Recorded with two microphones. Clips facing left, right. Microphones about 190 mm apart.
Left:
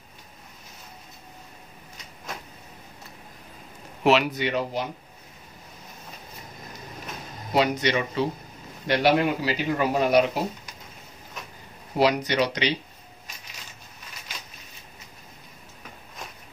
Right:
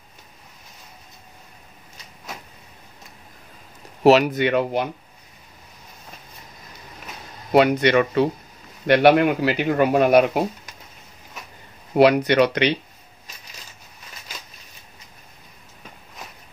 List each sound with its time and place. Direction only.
4.0 s a man's voice: 45° right (ahead or behind); by 4.8 s 60° right (ahead or behind)
7.5 s a man's voice: 60° right (ahead or behind)
12.0 s a man's voice: 60° right (ahead or behind)